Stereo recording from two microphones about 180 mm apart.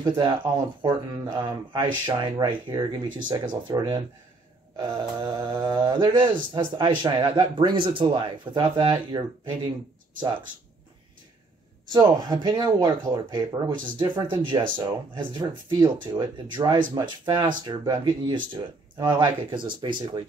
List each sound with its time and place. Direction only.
0.0 s speech: 25° right (ahead or behind)
11.9 s speech: 20° right (ahead or behind)